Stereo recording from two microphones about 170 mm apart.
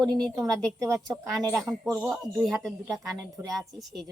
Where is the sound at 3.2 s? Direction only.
20° right (ahead or behind).